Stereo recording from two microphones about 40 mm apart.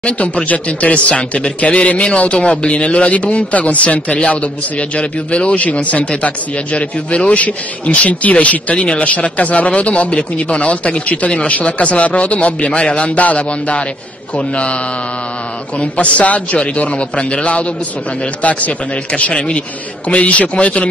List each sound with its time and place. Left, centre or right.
0.5 s a man's voice: left
15.8 s a man's voice: left